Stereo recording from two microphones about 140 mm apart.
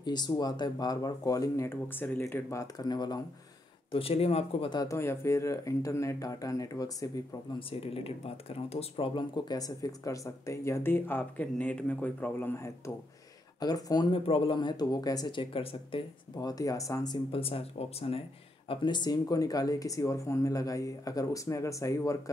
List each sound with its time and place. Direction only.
0.0 s speech: 30° left (ahead or behind)
3.9 s speech: 45° left (ahead or behind)
4.6 s speech: 25° left (ahead or behind)
7.5 s speech: 40° left (ahead or behind)
16.3 s speech: 25° left (ahead or behind)
17.3 s speech: 40° left (ahead or behind)
18.7 s speech: 30° left (ahead or behind)